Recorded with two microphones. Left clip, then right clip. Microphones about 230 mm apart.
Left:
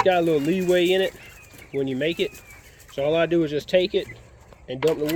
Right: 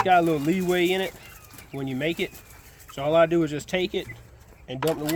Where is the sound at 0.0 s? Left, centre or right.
Right.